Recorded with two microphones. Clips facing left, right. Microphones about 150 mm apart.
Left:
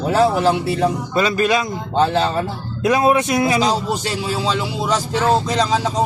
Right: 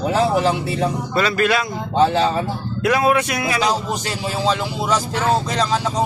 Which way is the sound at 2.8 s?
20° left (ahead or behind).